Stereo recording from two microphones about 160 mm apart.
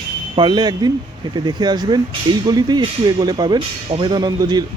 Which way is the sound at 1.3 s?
25° right (ahead or behind).